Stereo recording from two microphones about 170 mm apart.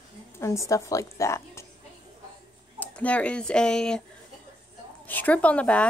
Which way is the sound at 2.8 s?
10° left (ahead or behind).